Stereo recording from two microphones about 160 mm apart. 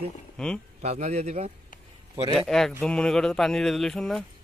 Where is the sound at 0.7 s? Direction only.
45° right (ahead or behind).